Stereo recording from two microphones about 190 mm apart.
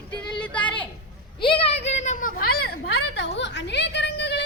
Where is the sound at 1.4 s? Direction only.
30° left (ahead or behind).